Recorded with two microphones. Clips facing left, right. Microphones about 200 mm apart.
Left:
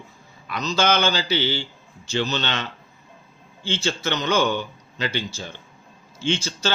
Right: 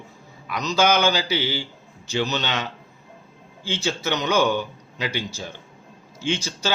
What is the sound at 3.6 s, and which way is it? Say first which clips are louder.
A man's voice: even; 15° right (ahead or behind).